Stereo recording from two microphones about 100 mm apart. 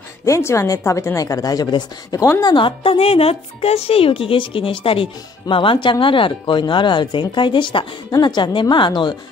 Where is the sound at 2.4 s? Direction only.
55° left (ahead or behind).